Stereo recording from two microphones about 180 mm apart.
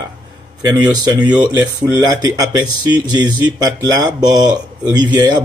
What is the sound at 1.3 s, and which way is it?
Speech, 10° right (ahead or behind).